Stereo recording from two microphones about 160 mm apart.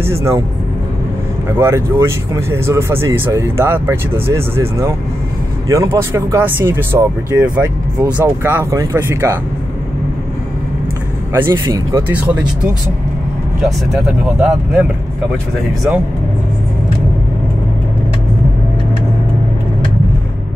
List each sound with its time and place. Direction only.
0.0 s speech: 15° right (ahead or behind)
1.6 s speech: 15° right (ahead or behind)
11.3 s speech: 15° right (ahead or behind)
14.2 s speech: 5° right (ahead or behind)